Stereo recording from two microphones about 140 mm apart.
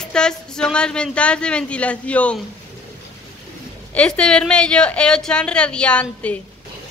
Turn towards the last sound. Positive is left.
turn(degrees=10)  # may be behind; listen again after turning